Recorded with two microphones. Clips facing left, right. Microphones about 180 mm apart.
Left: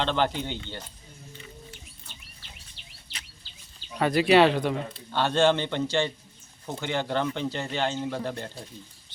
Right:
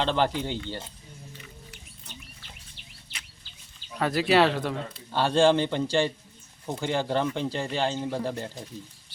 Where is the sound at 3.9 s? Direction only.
Centre (ahead or behind).